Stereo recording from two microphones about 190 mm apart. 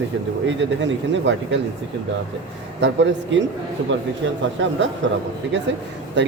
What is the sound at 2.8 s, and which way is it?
Speech, 70° right (ahead or behind).